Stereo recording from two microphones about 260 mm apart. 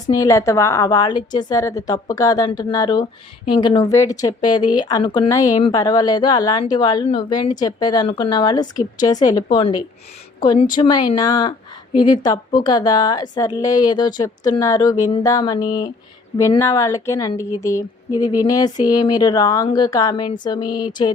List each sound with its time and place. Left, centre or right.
0.1 s a woman's voice: centre